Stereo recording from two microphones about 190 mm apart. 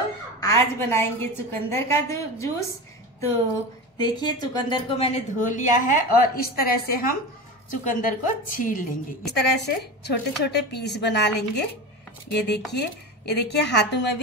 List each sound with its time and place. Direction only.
0.4 s a woman's voice: 15° left (ahead or behind)
4.0 s a woman's voice: 20° left (ahead or behind); by 14.0 s 60° left (ahead or behind)